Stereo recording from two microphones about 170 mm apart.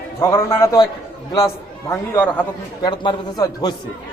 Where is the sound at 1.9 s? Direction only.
10° left (ahead or behind).